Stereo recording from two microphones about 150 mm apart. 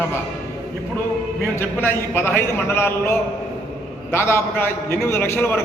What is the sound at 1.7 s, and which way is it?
A man's voice, 15° left (ahead or behind).